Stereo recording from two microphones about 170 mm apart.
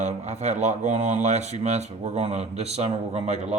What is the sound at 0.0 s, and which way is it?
Speech, 40° right (ahead or behind).